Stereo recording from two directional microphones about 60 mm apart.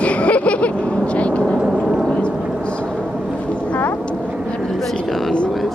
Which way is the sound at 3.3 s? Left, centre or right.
Centre.